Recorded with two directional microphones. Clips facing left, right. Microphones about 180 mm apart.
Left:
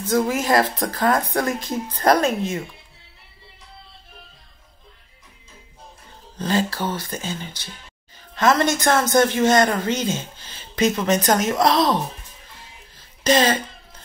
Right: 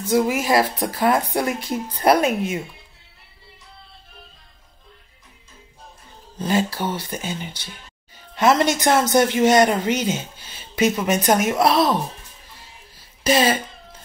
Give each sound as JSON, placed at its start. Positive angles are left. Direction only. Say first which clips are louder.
{"t": 0.1, "sound": "speech", "louder": "right 1 dB", "side_deg": -10}
{"t": 6.3, "sound": "speech", "louder": "right 1 dB", "side_deg": -15}
{"t": 13.2, "sound": "speech", "louder": "even", "side_deg": -10}